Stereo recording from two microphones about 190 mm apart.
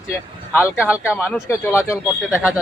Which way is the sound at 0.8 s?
5° right (ahead or behind).